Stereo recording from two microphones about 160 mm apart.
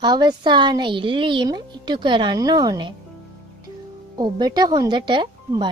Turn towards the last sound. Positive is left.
turn(degrees=-30)  # may be behind; listen again after turning